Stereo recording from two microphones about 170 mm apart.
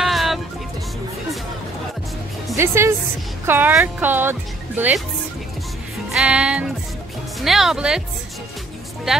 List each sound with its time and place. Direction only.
0.0 s music: centre (ahead or behind)
2.5 s speech: 15° right (ahead or behind)
6.1 s speech: 5° right (ahead or behind)